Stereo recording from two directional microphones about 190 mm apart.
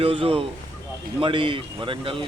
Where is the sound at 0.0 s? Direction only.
30° right (ahead or behind).